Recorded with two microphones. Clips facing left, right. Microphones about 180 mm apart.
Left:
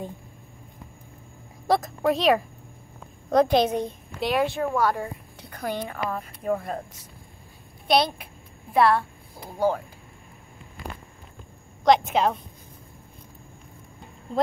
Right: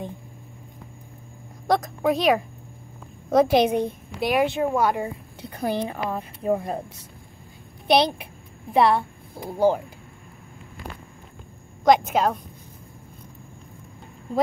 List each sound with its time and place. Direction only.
1.7 s a woman's voice: centre (ahead or behind); by 6.8 s 20° right (ahead or behind)
8.7 s speech: 20° right (ahead or behind)
11.8 s a woman's voice: 5° right (ahead or behind)